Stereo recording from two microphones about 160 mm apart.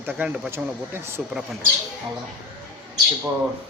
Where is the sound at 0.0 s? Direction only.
10° right (ahead or behind).